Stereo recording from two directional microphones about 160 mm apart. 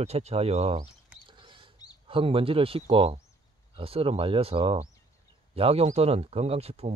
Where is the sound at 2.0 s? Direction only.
35° right (ahead or behind).